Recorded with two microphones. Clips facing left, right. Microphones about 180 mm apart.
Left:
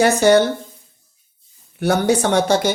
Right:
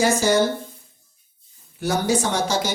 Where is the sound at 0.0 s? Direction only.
65° left (ahead or behind).